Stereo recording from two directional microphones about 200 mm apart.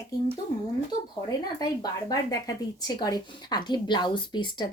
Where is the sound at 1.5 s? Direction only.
20° left (ahead or behind).